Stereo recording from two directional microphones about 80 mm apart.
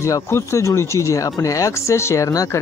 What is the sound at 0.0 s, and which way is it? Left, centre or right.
Speech, left.